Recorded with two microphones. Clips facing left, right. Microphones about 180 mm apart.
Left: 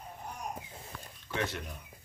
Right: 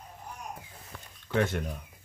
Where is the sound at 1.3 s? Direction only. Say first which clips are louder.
Right 7 dB; 50° right (ahead or behind).